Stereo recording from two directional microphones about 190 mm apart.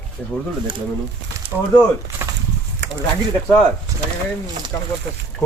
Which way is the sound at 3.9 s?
15° right (ahead or behind).